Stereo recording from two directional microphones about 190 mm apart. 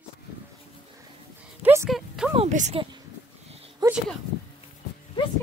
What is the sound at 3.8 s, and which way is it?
Speech, 20° right (ahead or behind).